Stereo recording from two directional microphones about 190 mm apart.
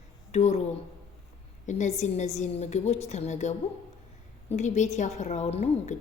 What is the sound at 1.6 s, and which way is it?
A woman's voice, 40° left (ahead or behind).